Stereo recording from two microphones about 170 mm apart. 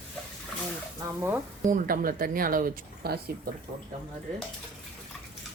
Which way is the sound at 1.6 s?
55° right (ahead or behind).